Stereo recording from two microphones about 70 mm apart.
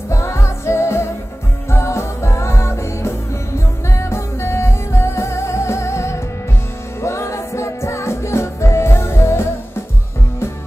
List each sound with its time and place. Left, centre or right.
0.1 s music: left